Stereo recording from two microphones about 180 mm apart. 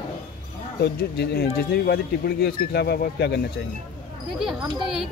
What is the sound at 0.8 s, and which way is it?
Speech, 65° left (ahead or behind).